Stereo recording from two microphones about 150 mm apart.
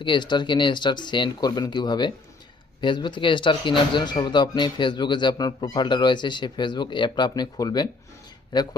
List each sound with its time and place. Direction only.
0.0 s speech: 30° left (ahead or behind)